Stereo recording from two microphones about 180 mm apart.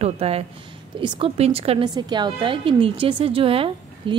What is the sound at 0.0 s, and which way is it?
A woman's voice, 35° right (ahead or behind).